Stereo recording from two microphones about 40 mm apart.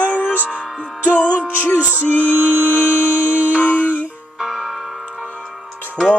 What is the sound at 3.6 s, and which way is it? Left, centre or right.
Music, left.